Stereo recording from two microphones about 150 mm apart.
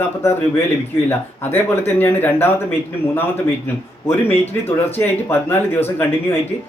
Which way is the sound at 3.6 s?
15° left (ahead or behind).